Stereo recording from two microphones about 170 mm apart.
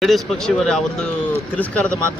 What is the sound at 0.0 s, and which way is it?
Speech, centre (ahead or behind).